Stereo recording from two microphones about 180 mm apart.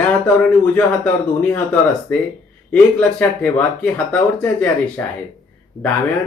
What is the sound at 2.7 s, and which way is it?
Speech, 5° left (ahead or behind).